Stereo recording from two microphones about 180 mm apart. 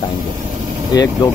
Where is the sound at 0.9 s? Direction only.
20° left (ahead or behind).